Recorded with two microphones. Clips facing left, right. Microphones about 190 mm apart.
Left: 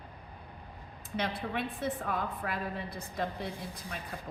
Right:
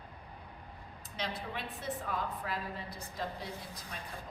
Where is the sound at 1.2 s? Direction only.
55° left (ahead or behind).